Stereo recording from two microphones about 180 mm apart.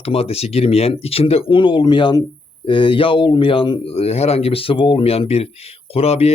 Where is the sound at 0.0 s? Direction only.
35° left (ahead or behind).